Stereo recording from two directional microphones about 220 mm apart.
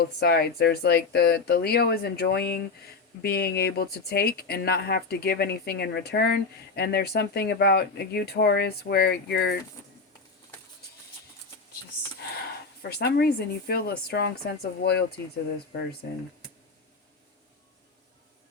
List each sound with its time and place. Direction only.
0.0 s a woman's voice: 45° left (ahead or behind)
12.9 s a woman's voice: 45° left (ahead or behind)